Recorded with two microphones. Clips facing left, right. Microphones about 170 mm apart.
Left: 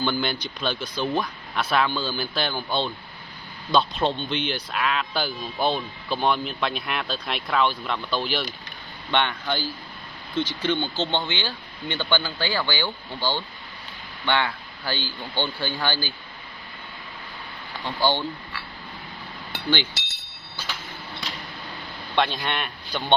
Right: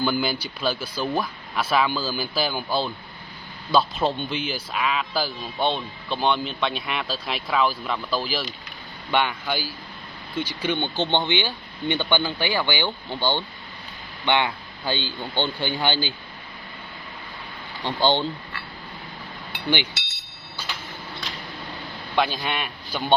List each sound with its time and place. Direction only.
0.0 s speech: 5° right (ahead or behind)
17.8 s speech: 20° right (ahead or behind)
22.1 s speech: 5° right (ahead or behind)